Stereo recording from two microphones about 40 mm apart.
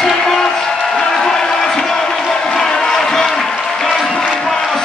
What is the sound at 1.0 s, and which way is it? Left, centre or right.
Crowd, centre.